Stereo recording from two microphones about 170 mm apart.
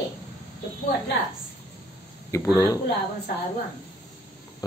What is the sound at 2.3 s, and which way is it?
Speech, 15° left (ahead or behind).